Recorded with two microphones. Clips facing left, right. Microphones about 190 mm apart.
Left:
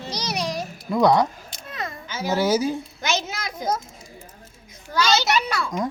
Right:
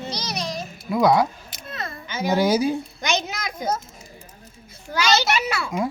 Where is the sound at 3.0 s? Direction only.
5° left (ahead or behind).